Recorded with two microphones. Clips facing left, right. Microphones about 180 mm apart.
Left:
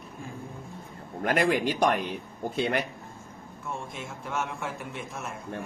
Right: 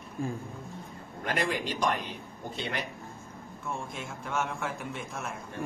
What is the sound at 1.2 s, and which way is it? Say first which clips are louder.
Speech: left 6 dB; 55° left (ahead or behind).